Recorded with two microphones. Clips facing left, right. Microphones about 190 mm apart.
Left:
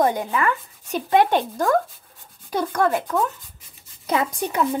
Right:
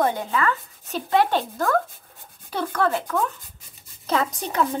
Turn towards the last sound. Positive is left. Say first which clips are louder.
# left 1 dB
turn(degrees=10)  # may be behind; listen again after turning